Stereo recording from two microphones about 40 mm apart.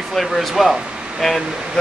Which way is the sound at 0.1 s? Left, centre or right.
Centre.